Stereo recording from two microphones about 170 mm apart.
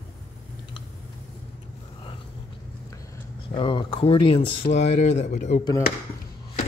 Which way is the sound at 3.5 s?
30° left (ahead or behind).